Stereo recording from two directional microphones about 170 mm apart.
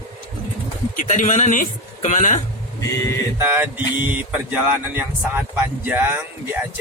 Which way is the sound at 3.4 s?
10° right (ahead or behind).